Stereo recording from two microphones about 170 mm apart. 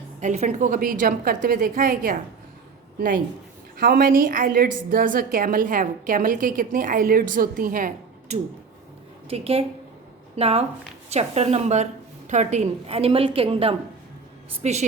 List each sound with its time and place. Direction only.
0.2 s a woman's voice: 45° right (ahead or behind)
3.8 s a woman's voice: 60° right (ahead or behind)
9.3 s a woman's voice: 35° right (ahead or behind)